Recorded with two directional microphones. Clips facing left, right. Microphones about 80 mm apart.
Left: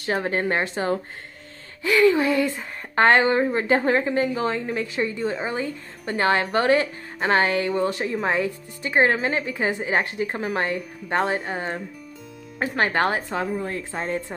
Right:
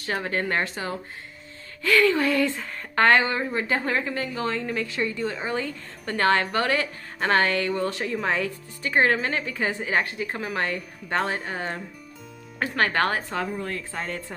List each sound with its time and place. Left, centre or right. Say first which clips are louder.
0.0 s a woman's voice: left 3 dB; left
10.1 s a woman's voice: left 4 dB; left
11.4 s speech: left 2 dB; centre
12.5 s a woman's voice: left 1 dB; left